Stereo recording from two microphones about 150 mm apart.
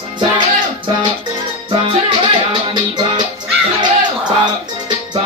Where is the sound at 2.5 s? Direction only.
30° right (ahead or behind).